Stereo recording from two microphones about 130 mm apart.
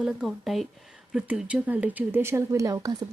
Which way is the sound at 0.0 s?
Centre (ahead or behind).